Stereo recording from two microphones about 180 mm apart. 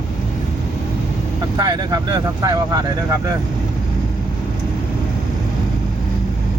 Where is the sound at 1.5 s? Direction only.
25° right (ahead or behind).